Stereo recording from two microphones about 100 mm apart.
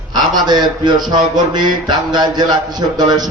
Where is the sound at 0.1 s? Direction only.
45° right (ahead or behind).